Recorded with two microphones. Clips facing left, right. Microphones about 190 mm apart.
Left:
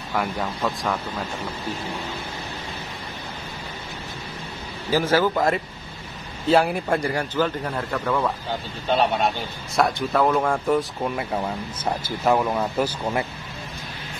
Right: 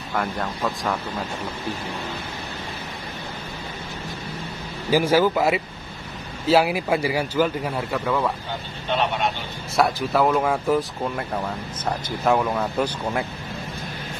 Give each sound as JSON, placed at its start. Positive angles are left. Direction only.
{"t": 0.1, "sound": "speech", "side_deg": 5}
{"t": 4.9, "sound": "a man's voice", "side_deg": -10}
{"t": 8.8, "sound": "speech", "side_deg": 40}
{"t": 9.8, "sound": "speech", "side_deg": 0}